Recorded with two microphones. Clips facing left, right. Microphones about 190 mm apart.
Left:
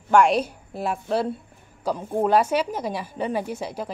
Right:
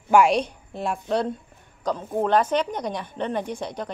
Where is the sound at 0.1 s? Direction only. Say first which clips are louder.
Even; centre (ahead or behind).